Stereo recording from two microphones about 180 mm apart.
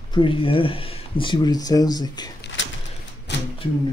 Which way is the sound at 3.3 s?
75° left (ahead or behind).